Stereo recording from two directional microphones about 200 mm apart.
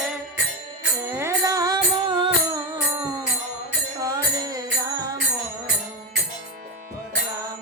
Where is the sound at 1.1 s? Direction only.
15° right (ahead or behind).